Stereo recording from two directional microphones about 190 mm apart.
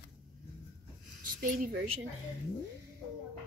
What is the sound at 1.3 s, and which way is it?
Speech, 50° right (ahead or behind).